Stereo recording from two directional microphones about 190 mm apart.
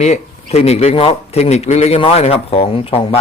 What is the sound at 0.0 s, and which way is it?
A man's voice, 35° left (ahead or behind).